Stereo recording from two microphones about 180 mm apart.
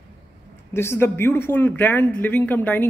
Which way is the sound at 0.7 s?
15° left (ahead or behind).